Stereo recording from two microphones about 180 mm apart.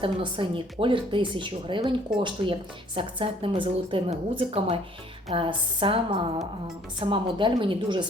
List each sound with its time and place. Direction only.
0.0 s speech: 30° right (ahead or behind)